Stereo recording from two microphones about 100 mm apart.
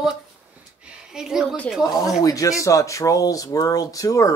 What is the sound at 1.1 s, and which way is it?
Speech, 5° right (ahead or behind).